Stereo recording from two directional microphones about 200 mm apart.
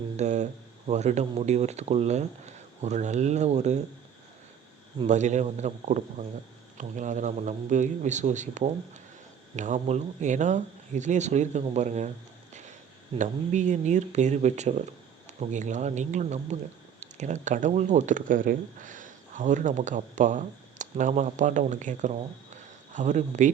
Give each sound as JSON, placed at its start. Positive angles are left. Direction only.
{"t": 0.2, "sound": "speech", "side_deg": -35}
{"t": 4.9, "sound": "speech", "side_deg": -35}
{"t": 13.1, "sound": "speech", "side_deg": -35}